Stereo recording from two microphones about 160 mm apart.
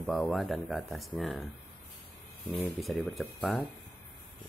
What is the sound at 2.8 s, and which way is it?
Speech, centre (ahead or behind).